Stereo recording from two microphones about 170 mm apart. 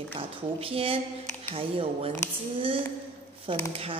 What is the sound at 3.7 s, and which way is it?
Speech, 35° right (ahead or behind).